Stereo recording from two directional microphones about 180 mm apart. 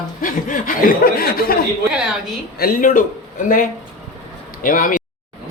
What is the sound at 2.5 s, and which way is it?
Speech, 50° left (ahead or behind).